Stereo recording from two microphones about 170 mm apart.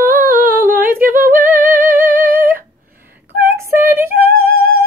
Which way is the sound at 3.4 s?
15° right (ahead or behind).